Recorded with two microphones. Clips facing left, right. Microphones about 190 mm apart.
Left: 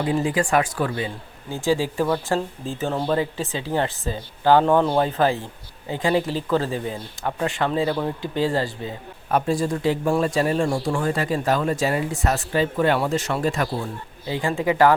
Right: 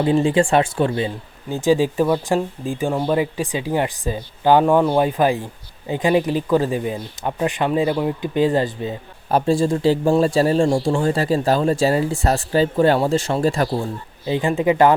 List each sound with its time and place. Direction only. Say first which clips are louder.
0.0 s a man's voice: right 6 dB; 25° right (ahead or behind)
14.3 s speech: right 5 dB; 20° right (ahead or behind)